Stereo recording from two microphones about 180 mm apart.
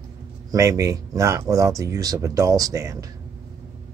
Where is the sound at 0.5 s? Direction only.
20° right (ahead or behind).